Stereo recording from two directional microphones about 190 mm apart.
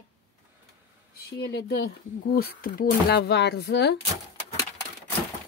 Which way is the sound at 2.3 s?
50° left (ahead or behind).